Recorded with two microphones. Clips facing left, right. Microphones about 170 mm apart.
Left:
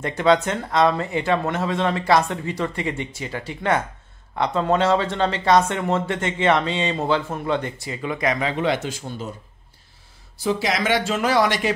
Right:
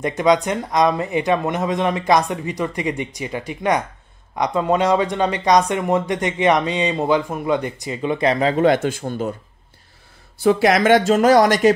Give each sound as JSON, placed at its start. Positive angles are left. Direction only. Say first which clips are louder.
{"t": 0.0, "sound": "speech", "louder": "right 2 dB", "side_deg": -15}
{"t": 10.4, "sound": "speech", "louder": "right 7 dB", "side_deg": -60}